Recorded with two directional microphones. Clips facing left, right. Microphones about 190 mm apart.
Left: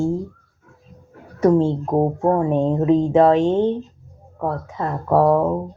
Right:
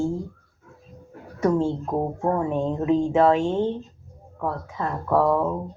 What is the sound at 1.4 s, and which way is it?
Speech, 35° left (ahead or behind).